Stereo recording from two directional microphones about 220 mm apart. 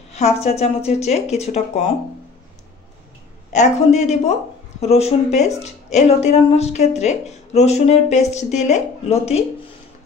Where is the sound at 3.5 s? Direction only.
30° left (ahead or behind).